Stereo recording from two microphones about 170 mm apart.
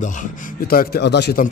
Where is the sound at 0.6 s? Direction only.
60° left (ahead or behind); by 1.4 s 80° left.